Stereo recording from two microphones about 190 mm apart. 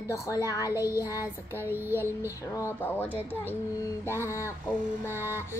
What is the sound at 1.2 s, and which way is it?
A child's voice, 10° right (ahead or behind).